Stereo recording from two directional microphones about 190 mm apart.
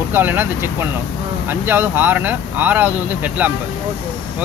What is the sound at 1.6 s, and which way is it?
Speech, 10° right (ahead or behind).